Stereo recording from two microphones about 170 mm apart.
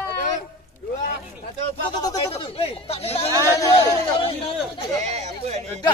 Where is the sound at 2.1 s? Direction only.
35° left (ahead or behind).